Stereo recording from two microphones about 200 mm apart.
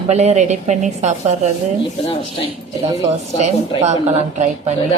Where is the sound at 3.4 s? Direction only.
35° right (ahead or behind).